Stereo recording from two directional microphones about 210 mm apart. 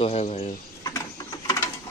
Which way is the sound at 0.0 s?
30° left (ahead or behind).